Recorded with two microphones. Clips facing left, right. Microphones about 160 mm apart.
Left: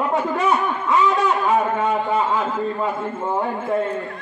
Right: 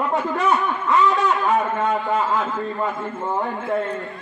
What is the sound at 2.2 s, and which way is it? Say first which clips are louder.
A man's voice: left 1 dB; 5° left (ahead or behind).